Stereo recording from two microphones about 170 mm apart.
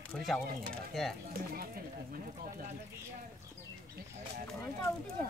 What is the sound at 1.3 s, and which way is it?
Speech, 60° right (ahead or behind).